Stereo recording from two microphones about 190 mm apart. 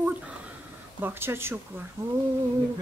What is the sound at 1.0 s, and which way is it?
Speech, 10° right (ahead or behind).